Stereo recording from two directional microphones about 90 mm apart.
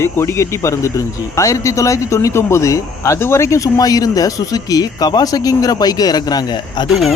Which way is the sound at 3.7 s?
45° left (ahead or behind).